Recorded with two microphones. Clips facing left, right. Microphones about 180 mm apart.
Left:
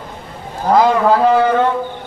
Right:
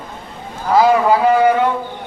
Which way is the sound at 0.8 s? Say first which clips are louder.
Right 1 dB; 10° right (ahead or behind).